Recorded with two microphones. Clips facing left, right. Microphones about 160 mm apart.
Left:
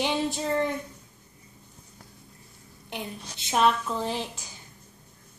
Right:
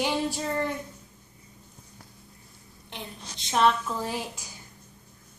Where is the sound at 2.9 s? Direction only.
5° left (ahead or behind).